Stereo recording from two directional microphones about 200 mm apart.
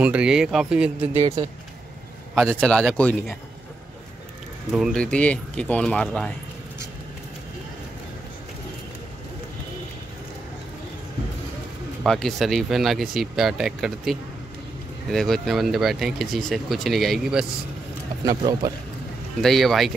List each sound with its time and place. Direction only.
0.0 s speech: 5° right (ahead or behind)
1.1 s speech: 30° right (ahead or behind)
2.5 s speech: 5° left (ahead or behind)
4.7 s speech: centre (ahead or behind)
12.0 s speech: centre (ahead or behind)
18.2 s speech: 20° right (ahead or behind)
19.4 s speech: centre (ahead or behind)